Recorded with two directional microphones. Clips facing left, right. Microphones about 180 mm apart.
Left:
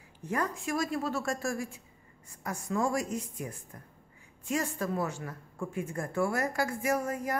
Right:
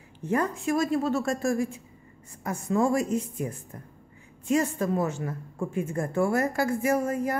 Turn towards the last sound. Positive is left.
turn(degrees=-30)  # may be behind; listen again after turning